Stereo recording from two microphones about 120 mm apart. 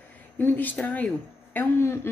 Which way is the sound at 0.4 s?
15° left (ahead or behind).